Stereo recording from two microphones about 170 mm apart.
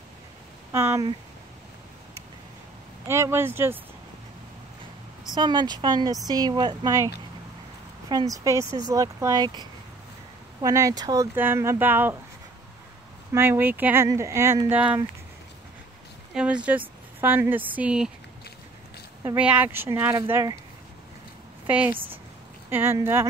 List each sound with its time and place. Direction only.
0.7 s speech: 15° right (ahead or behind)
3.1 s speech: 15° right (ahead or behind)
5.3 s speech: 25° right (ahead or behind)
8.1 s speech: 20° right (ahead or behind)
13.3 s speech: 15° right (ahead or behind)
16.3 s speech: 5° right (ahead or behind)
19.3 s speech: 10° right (ahead or behind)
21.6 s speech: 10° right (ahead or behind)